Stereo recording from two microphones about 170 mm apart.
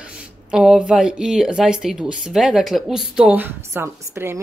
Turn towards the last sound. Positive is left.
turn(degrees=-15)  # may be behind; listen again after turning